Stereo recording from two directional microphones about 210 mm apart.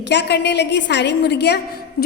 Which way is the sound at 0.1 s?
55° left (ahead or behind).